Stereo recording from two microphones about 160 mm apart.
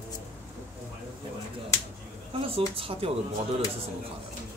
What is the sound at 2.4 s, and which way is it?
Speech, 35° right (ahead or behind).